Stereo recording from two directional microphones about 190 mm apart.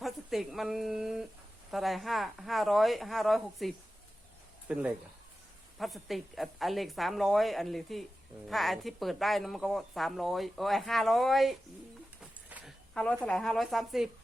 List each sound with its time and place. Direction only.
0.0 s speech: centre (ahead or behind)
12.2 s a sound: 5° right (ahead or behind)
12.9 s speech: 5° left (ahead or behind)